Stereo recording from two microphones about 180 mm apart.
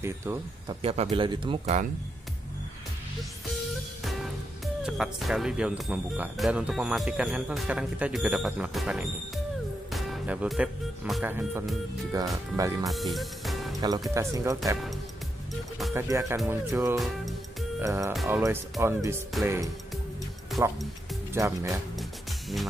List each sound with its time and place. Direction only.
0.0 s speech: 15° right (ahead or behind)
0.8 s speech: 35° right (ahead or behind)
4.8 s speech: 5° right (ahead or behind)
12.1 s speech: 20° right (ahead or behind)
12.8 s music: centre (ahead or behind)
13.7 s speech: 20° right (ahead or behind)
15.9 s speech: 15° right (ahead or behind)